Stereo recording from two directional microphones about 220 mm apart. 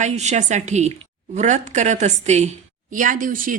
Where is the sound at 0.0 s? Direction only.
30° right (ahead or behind).